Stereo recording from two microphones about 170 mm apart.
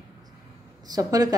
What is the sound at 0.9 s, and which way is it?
Speech, 20° right (ahead or behind).